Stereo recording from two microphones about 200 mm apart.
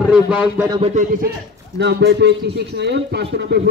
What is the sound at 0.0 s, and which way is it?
Speech, 5° right (ahead or behind).